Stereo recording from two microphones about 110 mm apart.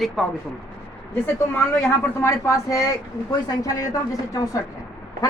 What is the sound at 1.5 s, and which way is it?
Speech, 20° left (ahead or behind).